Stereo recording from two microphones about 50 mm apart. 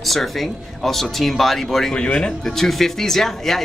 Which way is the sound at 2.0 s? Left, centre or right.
Centre.